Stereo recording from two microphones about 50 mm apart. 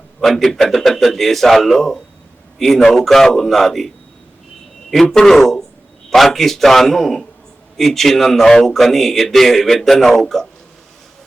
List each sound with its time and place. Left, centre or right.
0.2 s speech: centre
5.0 s speech: centre